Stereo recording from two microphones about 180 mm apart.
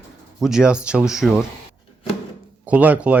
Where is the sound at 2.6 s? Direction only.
10° right (ahead or behind).